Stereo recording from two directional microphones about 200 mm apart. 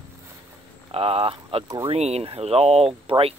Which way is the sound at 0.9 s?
30° right (ahead or behind).